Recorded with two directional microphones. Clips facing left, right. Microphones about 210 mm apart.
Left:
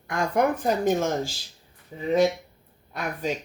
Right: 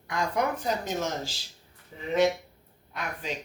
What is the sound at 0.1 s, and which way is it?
Speech, 50° left (ahead or behind).